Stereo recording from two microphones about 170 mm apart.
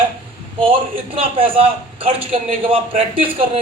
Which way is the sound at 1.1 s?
35° right (ahead or behind).